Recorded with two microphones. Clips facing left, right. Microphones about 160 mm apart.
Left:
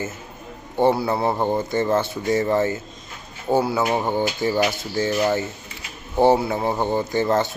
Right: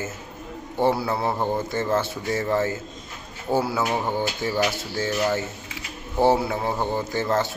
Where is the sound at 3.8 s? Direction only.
15° left (ahead or behind).